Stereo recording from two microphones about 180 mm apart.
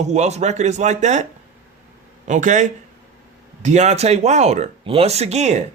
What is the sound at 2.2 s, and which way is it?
Speech, 45° right (ahead or behind).